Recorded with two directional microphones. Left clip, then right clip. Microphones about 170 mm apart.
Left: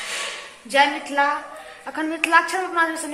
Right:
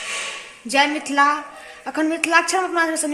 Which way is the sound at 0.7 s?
90° right.